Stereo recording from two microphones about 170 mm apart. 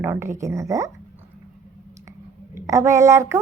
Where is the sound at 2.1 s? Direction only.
20° right (ahead or behind).